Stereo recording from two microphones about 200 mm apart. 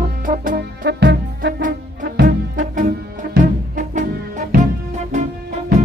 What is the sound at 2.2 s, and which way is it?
Music, 45° right (ahead or behind).